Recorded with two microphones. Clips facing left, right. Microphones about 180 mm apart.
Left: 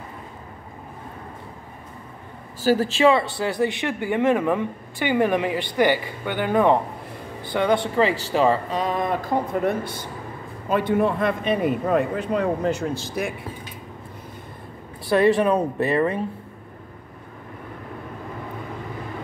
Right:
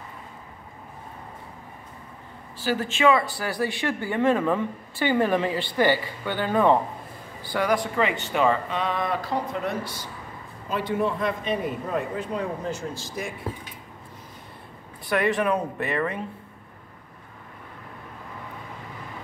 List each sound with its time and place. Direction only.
2.6 s a man's voice: 35° left (ahead or behind); by 13.3 s 70° left (ahead or behind)
15.0 s speech: 30° left (ahead or behind)